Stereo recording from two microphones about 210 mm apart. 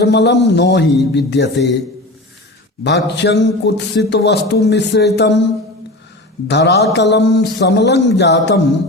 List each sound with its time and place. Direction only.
0.0 s speech: 55° left (ahead or behind)
2.8 s a man's voice: 55° left (ahead or behind)
6.5 s a man's voice: 55° left (ahead or behind)